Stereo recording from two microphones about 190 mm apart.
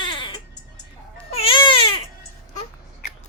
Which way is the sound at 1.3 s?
30° left (ahead or behind).